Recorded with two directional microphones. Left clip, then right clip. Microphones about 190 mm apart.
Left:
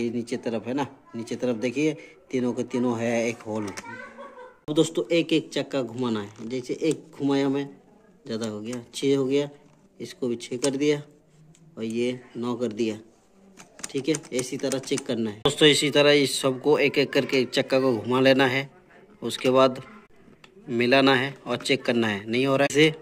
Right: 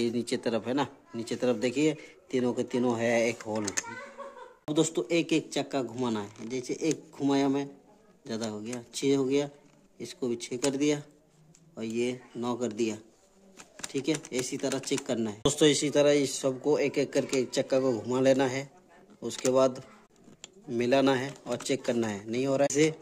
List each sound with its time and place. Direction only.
0.0 s speech: 30° right (ahead or behind)
4.7 s speech: 15° right (ahead or behind)